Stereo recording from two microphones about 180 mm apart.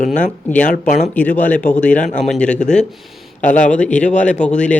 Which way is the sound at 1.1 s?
10° left (ahead or behind).